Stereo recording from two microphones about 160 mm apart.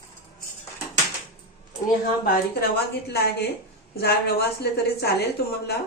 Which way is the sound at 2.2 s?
80° left.